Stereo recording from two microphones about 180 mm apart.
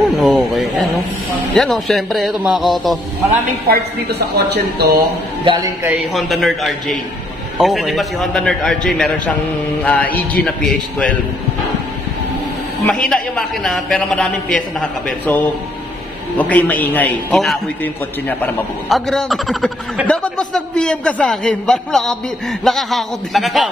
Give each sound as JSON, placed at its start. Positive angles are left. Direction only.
{"t": 0.2, "sound": "a man's voice", "side_deg": 0}
{"t": 3.6, "sound": "a woman's voice", "side_deg": -60}
{"t": 5.4, "sound": "a man's voice", "side_deg": -25}
{"t": 5.9, "sound": "a man's voice", "side_deg": -5}
{"t": 12.8, "sound": "a man's voice", "side_deg": 5}